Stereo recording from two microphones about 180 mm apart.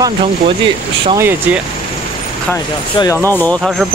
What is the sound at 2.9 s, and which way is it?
Speech, 20° left (ahead or behind).